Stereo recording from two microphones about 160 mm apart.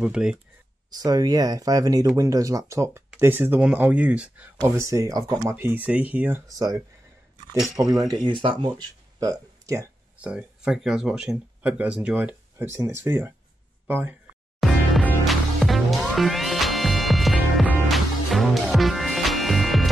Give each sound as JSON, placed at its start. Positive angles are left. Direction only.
{"t": 0.0, "sound": "speech", "side_deg": -5}
{"t": 0.8, "sound": "speech", "side_deg": -25}
{"t": 6.5, "sound": "speech", "side_deg": -25}
{"t": 8.1, "sound": "speech", "side_deg": -30}
{"t": 10.1, "sound": "speech", "side_deg": -5}
{"t": 14.6, "sound": "music", "side_deg": 5}